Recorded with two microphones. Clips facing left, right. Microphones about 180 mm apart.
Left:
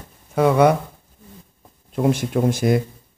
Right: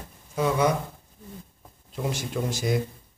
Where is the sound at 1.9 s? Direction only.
55° left (ahead or behind).